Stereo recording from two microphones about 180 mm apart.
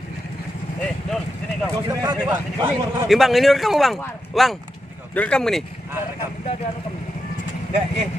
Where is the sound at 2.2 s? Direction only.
10° right (ahead or behind).